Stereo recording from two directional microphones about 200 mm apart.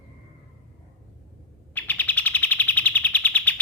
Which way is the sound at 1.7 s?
10° left (ahead or behind).